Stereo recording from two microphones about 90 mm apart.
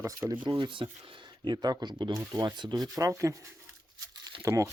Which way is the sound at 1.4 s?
50° right (ahead or behind).